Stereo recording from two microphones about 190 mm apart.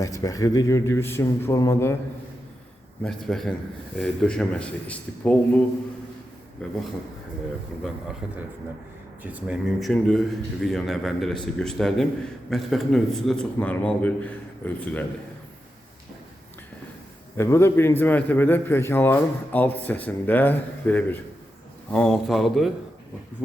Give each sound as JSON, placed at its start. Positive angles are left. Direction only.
{"t": 0.0, "sound": "a man's voice", "side_deg": 15}
{"t": 3.0, "sound": "a man's voice", "side_deg": 0}
{"t": 8.2, "sound": "a man's voice", "side_deg": -5}
{"t": 9.5, "sound": "a man's voice", "side_deg": 0}
{"t": 17.3, "sound": "a man's voice", "side_deg": 15}